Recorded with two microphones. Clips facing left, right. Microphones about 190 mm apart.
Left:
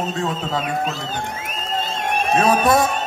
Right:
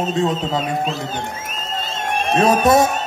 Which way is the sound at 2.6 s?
20° right (ahead or behind).